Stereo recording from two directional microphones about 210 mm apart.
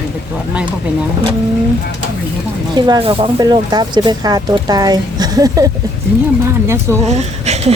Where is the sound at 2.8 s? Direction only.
20° right (ahead or behind).